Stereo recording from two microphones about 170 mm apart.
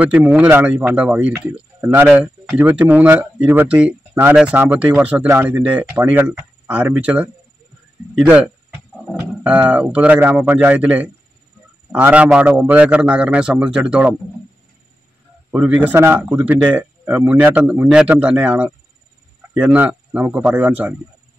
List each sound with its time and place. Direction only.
0.0 s speech: 10° right (ahead or behind)
15.5 s speech: 10° right (ahead or behind)